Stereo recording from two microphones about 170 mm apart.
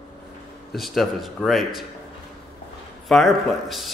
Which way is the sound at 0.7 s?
Centre (ahead or behind).